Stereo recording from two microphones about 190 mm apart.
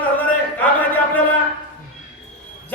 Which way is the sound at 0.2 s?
10° left (ahead or behind).